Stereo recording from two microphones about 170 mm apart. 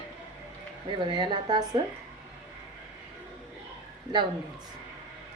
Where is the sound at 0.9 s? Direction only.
30° right (ahead or behind).